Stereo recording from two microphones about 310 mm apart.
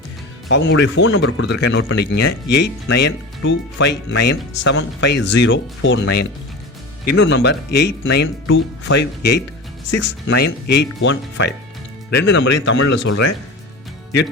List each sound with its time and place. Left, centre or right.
0.4 s speech: left